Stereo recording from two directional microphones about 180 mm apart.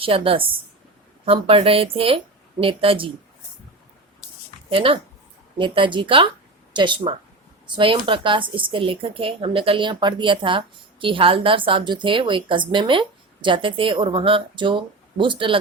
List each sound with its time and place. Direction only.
0.0 s a woman's voice: 30° right (ahead or behind)
4.7 s a woman's voice: 30° right (ahead or behind)